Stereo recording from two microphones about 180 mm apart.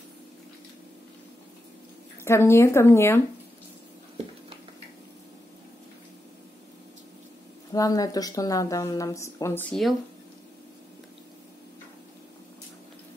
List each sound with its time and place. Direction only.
2.2 s speech: 15° left (ahead or behind)
7.7 s speech: 20° left (ahead or behind); by 9.9 s 5° left (ahead or behind)